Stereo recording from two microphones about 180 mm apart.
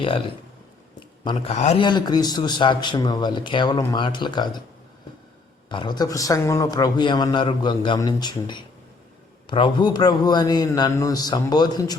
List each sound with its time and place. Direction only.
1.2 s a man's voice: 25° left (ahead or behind)
1.5 s a man's voice: 40° left (ahead or behind)
1.8 s a man's voice: 25° left (ahead or behind)
5.6 s a man's voice: 25° left (ahead or behind)